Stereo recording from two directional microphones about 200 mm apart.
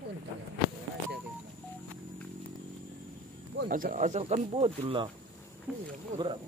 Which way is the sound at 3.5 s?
45° right (ahead or behind).